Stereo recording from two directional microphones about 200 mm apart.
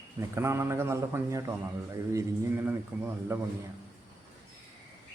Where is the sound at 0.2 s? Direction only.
10° right (ahead or behind).